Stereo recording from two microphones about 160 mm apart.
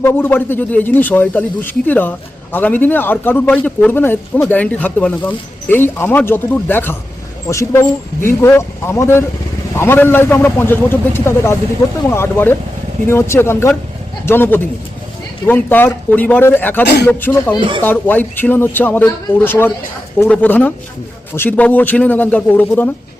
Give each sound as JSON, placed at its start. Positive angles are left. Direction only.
{"t": 0.0, "sound": "speech", "side_deg": 15}
{"t": 16.8, "sound": "speech", "side_deg": 90}
{"t": 17.1, "sound": "speech", "side_deg": 10}
{"t": 17.6, "sound": "speech", "side_deg": -30}
{"t": 17.8, "sound": "speech", "side_deg": 10}